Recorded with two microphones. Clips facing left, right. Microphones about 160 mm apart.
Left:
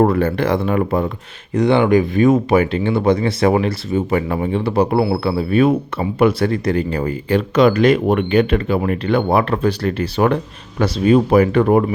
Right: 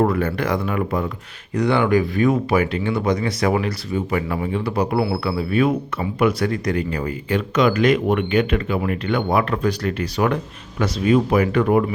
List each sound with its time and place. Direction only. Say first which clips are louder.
0.1 s speech: left 4 dB; 30° left (ahead or behind)
1.5 s speech: left 4 dB; 20° left (ahead or behind); by 11.9 s 35° left (ahead or behind)